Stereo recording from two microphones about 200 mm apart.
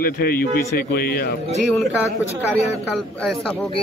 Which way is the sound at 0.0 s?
50° left (ahead or behind).